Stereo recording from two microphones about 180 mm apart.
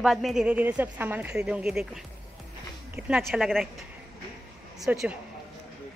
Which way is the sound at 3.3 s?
Centre (ahead or behind).